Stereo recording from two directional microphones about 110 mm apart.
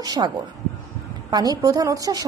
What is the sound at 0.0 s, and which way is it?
Speech, 40° right (ahead or behind).